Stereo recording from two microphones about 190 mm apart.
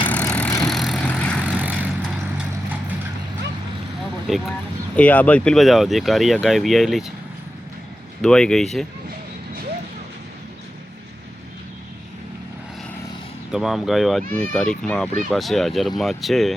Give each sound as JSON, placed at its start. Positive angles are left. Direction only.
{"t": 0.0, "sound": "vehicle", "side_deg": 5}
{"t": 1.5, "sound": "vehicle", "side_deg": -10}
{"t": 4.3, "sound": "speech", "side_deg": 0}
{"t": 8.2, "sound": "speech", "side_deg": 5}
{"t": 13.5, "sound": "speech", "side_deg": 0}